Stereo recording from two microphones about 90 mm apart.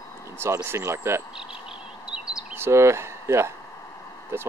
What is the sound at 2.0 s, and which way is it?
Bird, 10° right (ahead or behind).